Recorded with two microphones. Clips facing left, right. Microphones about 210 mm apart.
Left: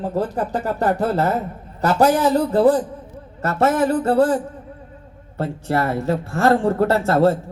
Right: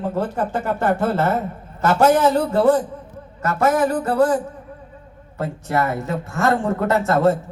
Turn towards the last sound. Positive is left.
turn(degrees=30)  # may be behind; listen again after turning